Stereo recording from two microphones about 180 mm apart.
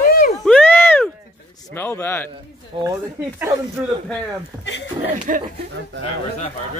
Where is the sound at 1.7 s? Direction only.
10° left (ahead or behind).